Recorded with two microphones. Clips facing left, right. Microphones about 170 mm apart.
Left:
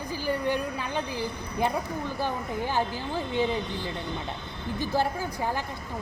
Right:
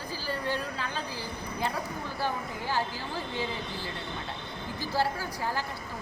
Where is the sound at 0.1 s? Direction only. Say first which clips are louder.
Left 5 dB; 15° left (ahead or behind).